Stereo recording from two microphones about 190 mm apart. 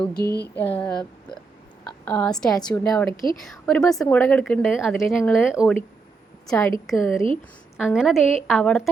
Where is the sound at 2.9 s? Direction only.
Centre (ahead or behind).